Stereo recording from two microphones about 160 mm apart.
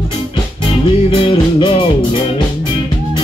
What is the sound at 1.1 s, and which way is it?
Music, 30° left (ahead or behind).